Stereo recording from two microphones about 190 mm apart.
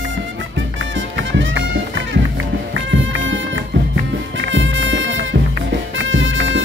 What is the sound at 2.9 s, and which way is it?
Music, 80° right.